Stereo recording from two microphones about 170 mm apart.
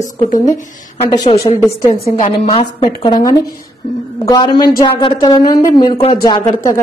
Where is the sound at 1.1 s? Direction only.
20° left (ahead or behind).